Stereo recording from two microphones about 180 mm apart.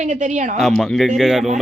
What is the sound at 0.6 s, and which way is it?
Speech, 5° left (ahead or behind).